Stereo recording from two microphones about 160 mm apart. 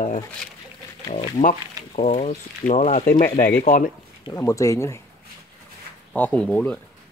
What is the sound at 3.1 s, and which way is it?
Speech, 60° left (ahead or behind).